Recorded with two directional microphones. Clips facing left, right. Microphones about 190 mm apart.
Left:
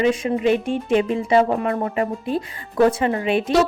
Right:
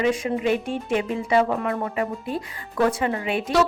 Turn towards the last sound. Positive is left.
turn(degrees=25)  # may be behind; listen again after turning